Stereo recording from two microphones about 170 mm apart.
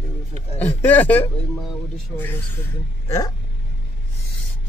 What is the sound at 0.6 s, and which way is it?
Speech, 10° left (ahead or behind).